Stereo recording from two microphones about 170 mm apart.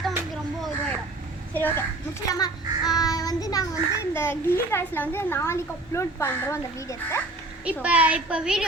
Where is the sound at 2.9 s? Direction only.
20° left (ahead or behind).